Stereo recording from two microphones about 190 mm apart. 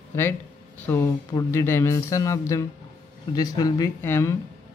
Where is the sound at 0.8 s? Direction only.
10° left (ahead or behind).